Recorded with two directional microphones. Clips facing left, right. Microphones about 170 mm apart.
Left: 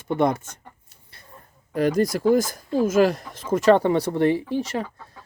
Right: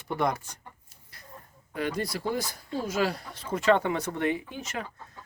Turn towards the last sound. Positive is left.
turn(degrees=35)  # may be behind; listen again after turning